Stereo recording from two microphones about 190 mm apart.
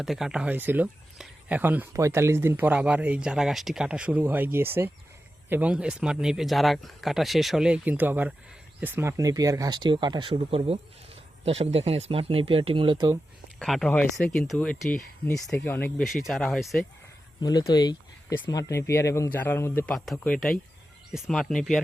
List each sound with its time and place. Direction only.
0.0 s speech: centre (ahead or behind); by 13.1 s 25° right (ahead or behind)
13.6 s speech: centre (ahead or behind)
17.4 s speech: 20° left (ahead or behind); by 21.8 s centre (ahead or behind)